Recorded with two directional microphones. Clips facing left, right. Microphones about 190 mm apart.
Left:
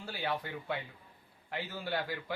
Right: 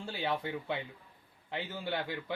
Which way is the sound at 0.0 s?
25° right (ahead or behind).